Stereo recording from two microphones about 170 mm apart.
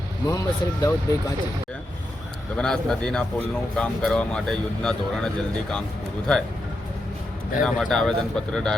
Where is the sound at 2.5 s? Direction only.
5° left (ahead or behind).